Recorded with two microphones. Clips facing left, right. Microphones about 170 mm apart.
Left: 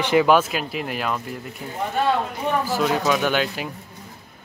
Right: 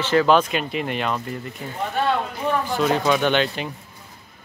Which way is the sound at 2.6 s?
5° left (ahead or behind).